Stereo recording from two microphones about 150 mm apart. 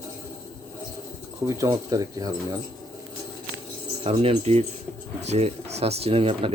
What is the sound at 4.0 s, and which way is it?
Speech, 40° right (ahead or behind).